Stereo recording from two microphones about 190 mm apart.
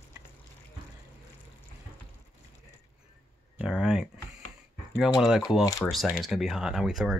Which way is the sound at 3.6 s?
5° right (ahead or behind).